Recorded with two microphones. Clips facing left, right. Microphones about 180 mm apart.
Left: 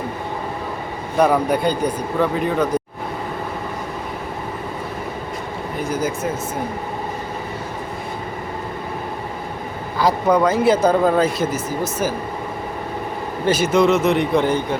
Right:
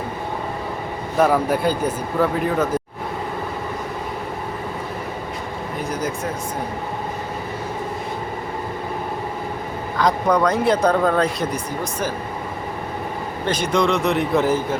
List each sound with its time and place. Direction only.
1.2 s speech: centre (ahead or behind)
5.9 s speech: centre (ahead or behind)
10.0 s speech: 5° left (ahead or behind)
13.5 s speech: 5° left (ahead or behind)